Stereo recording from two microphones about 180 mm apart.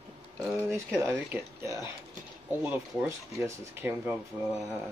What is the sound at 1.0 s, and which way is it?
Speech, 10° right (ahead or behind).